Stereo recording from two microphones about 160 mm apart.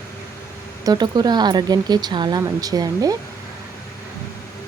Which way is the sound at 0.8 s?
25° right (ahead or behind).